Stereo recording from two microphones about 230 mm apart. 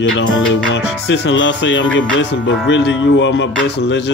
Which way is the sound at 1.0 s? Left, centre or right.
Left.